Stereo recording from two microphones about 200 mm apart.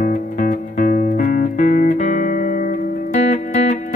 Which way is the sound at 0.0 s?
40° left (ahead or behind).